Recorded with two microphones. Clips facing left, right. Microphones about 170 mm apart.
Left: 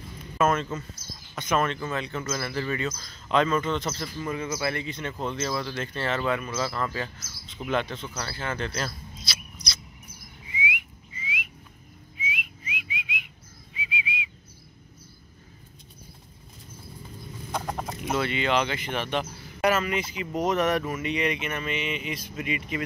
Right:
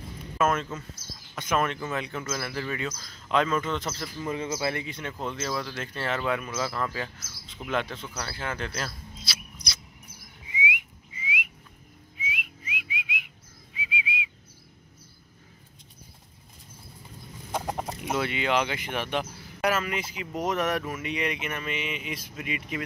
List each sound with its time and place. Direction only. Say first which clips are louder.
0.4 s a sound: left 2 dB; 5° right (ahead or behind)
1.3 s speech: left 1 dB; 5° right (ahead or behind)
4.3 s speech: even; 20° right (ahead or behind)
10.5 s whistling: right 1 dB; 20° right (ahead or behind)
12.2 s whistling: left 1 dB; centre (ahead or behind)
17.6 s chicken: right 1 dB; 15° right (ahead or behind)
18.0 s speech: left 2 dB; 10° right (ahead or behind)